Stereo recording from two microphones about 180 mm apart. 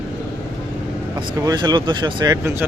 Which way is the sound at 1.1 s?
20° right (ahead or behind).